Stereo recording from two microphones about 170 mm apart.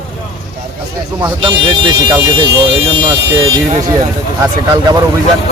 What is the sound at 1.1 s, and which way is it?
Speech, 25° right (ahead or behind).